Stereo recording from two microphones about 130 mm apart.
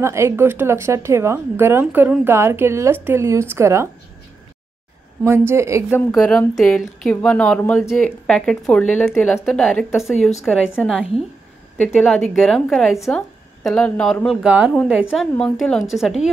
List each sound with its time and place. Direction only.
0.0 s speech: 20° right (ahead or behind)
5.2 s speech: 20° right (ahead or behind)
5.9 s speech: 10° left (ahead or behind)
14.4 s a woman's voice: 10° right (ahead or behind)
15.3 s speech: 5° left (ahead or behind)